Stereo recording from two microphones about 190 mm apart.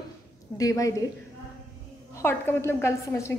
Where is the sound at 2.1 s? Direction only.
10° left (ahead or behind).